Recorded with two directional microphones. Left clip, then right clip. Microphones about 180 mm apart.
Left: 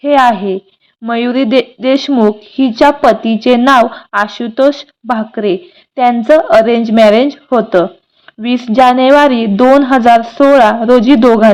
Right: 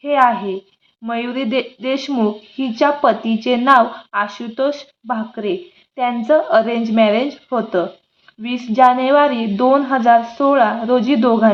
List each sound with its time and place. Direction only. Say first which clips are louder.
0.0 s a woman's voice: left 6 dB; 35° left (ahead or behind)